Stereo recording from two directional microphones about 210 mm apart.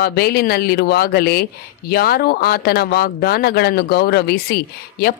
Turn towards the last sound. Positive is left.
turn(degrees=45)  # may be behind; listen again after turning